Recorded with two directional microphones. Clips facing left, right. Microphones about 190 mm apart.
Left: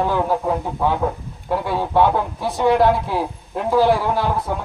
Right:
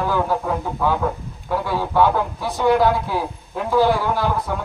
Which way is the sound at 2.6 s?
Centre (ahead or behind).